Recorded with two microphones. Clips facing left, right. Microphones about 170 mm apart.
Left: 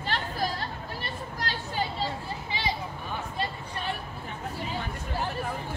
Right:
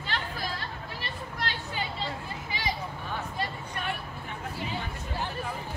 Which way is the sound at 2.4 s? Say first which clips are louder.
Left 1 dB; 30° left (ahead or behind).